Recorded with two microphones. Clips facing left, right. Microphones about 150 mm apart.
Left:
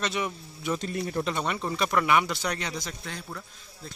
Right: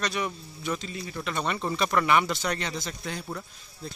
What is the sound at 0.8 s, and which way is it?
Speech, 55° left (ahead or behind).